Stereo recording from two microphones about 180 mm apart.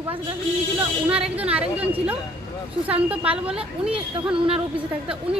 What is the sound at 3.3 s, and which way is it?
Speech, 5° right (ahead or behind).